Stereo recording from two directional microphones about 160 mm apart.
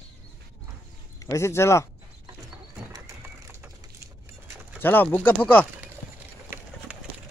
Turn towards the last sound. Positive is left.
turn(degrees=10)  # may be behind; listen again after turning